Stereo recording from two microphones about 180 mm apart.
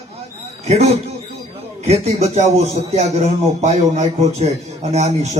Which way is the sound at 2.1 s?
40° right (ahead or behind).